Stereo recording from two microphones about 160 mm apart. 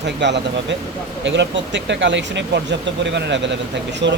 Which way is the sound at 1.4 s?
90° right.